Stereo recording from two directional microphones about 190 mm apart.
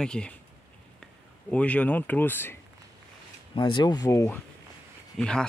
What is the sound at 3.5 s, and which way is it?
Speech, 25° left (ahead or behind).